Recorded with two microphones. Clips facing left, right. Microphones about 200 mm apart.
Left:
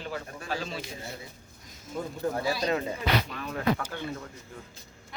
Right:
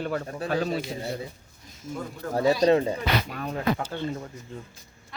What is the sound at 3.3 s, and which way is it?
Speech, 40° right (ahead or behind).